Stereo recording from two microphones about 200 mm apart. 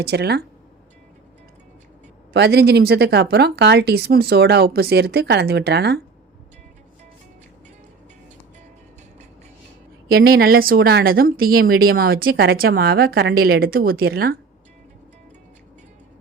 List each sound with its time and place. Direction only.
0.0 s speech: 55° right (ahead or behind)
2.3 s speech: 55° right (ahead or behind)
10.1 s speech: 50° right (ahead or behind)